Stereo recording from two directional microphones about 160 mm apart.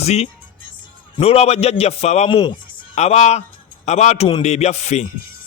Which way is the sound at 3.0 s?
45° left (ahead or behind).